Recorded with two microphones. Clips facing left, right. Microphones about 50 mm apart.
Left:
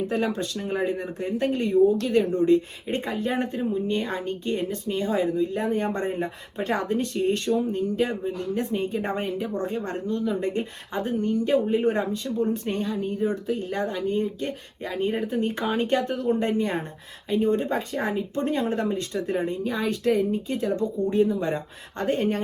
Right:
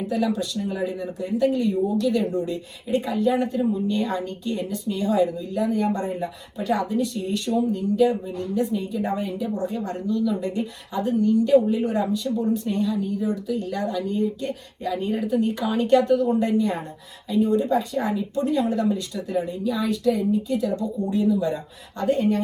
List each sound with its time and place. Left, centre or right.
0.1 s a woman's voice: left